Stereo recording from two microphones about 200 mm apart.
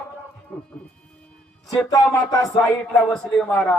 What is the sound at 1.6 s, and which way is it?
Speech, 15° left (ahead or behind).